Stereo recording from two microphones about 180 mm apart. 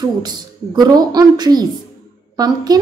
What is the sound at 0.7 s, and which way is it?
A woman's voice, 20° right (ahead or behind).